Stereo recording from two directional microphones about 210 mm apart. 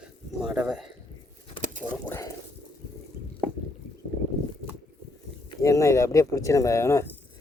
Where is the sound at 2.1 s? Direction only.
10° left (ahead or behind).